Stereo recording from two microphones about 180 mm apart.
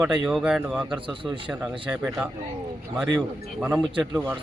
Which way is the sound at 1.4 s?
5° right (ahead or behind).